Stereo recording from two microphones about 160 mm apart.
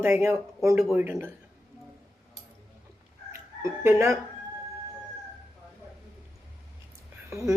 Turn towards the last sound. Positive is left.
turn(degrees=-20)  # may be behind; listen again after turning